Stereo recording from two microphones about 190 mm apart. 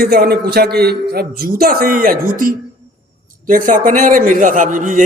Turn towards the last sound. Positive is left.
turn(degrees=-45)  # may be behind; listen again after turning